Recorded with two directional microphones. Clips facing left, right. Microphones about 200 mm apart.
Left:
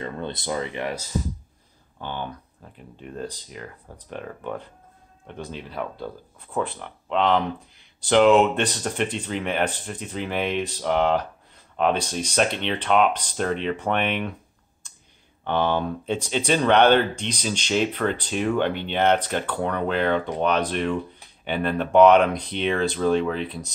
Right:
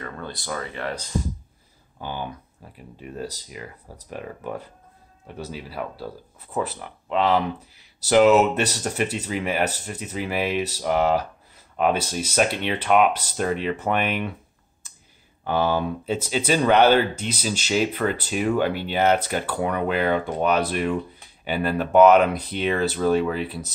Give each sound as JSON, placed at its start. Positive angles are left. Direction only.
{"t": 0.0, "sound": "speech", "side_deg": 25}
{"t": 2.0, "sound": "speech", "side_deg": -10}
{"t": 14.8, "sound": "clicking", "side_deg": -5}
{"t": 15.4, "sound": "speech", "side_deg": -5}